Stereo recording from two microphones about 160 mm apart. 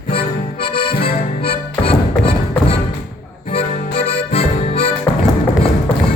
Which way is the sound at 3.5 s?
35° left (ahead or behind).